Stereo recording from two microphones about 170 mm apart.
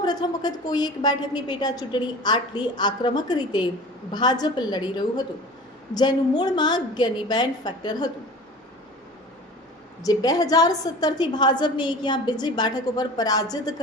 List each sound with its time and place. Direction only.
0.0 s a woman's voice: 25° left (ahead or behind)
10.0 s a woman's voice: 20° left (ahead or behind)